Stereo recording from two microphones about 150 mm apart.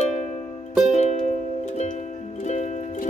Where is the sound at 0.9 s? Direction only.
50° left (ahead or behind).